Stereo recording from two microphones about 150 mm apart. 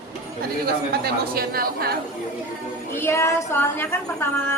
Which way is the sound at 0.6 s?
90° right.